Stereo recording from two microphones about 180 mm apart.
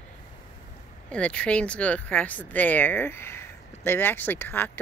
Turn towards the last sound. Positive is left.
turn(degrees=10)  # may be behind; listen again after turning